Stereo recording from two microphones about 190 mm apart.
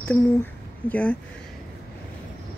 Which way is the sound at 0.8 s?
5° left (ahead or behind).